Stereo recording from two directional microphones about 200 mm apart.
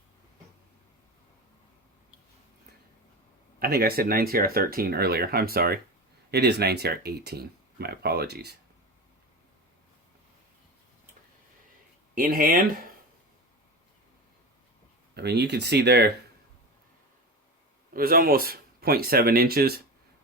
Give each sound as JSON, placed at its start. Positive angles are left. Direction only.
{"t": 3.6, "sound": "speech", "side_deg": -50}
{"t": 12.1, "sound": "speech", "side_deg": -45}
{"t": 15.1, "sound": "speech", "side_deg": -55}
{"t": 17.9, "sound": "speech", "side_deg": -45}